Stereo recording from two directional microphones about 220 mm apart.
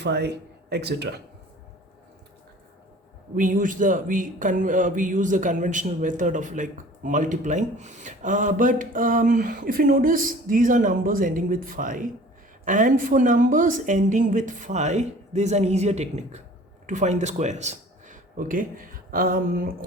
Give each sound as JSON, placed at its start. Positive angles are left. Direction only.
{"t": 0.0, "sound": "speech", "side_deg": -50}
{"t": 3.3, "sound": "speech", "side_deg": -35}